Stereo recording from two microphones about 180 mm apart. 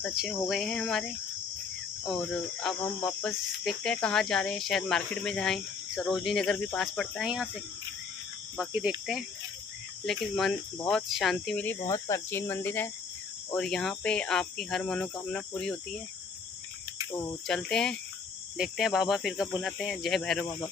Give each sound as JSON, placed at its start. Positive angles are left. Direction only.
{"t": 0.0, "sound": "speech", "side_deg": 0}
{"t": 8.5, "sound": "speech", "side_deg": -5}
{"t": 11.8, "sound": "speech", "side_deg": 15}
{"t": 17.1, "sound": "speech", "side_deg": 25}
{"t": 17.5, "sound": "speech", "side_deg": 5}